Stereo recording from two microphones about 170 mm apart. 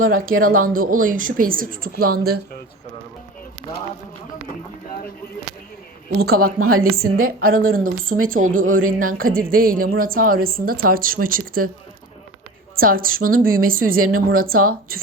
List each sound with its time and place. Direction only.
0.1 s speech: 55° right (ahead or behind)
6.1 s speech: 60° right (ahead or behind)
8.1 s speech: 90° right
8.4 s speech: 55° right (ahead or behind)
12.7 s speech: 60° right (ahead or behind)